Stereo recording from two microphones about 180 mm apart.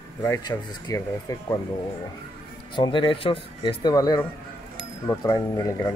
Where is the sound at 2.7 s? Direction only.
25° left (ahead or behind).